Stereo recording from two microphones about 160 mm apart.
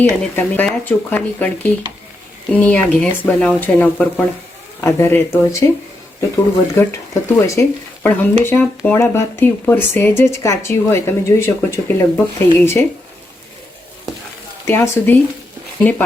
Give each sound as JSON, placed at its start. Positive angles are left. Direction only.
{"t": 0.0, "sound": "speech", "side_deg": 10}
{"t": 6.7, "sound": "speech", "side_deg": 15}
{"t": 14.6, "sound": "speech", "side_deg": 15}